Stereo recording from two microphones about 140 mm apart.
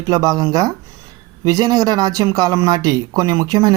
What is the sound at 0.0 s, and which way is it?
A man's voice, 25° right (ahead or behind).